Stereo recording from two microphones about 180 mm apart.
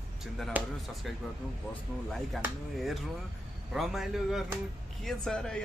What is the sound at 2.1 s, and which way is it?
Speech, centre (ahead or behind).